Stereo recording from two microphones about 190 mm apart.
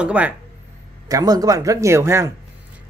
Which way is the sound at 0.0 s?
10° right (ahead or behind).